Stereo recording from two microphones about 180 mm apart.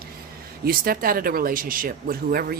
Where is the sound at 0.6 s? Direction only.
55° right (ahead or behind).